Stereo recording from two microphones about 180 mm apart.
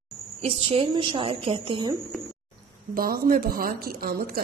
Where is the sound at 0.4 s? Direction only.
30° right (ahead or behind).